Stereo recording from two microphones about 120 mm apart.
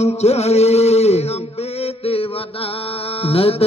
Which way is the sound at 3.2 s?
55° left (ahead or behind).